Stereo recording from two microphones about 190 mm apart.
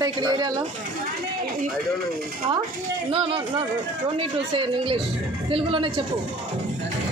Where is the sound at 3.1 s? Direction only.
30° right (ahead or behind).